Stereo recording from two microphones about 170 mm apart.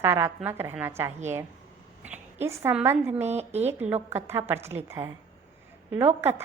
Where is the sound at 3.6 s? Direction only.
10° right (ahead or behind).